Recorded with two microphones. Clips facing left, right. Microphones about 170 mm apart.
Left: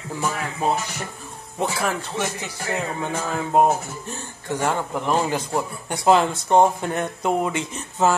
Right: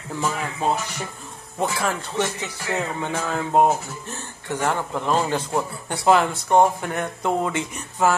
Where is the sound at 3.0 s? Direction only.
10° left (ahead or behind).